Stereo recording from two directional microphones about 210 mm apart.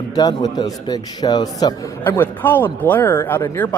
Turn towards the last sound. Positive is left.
turn(degrees=10)  # may be behind; listen again after turning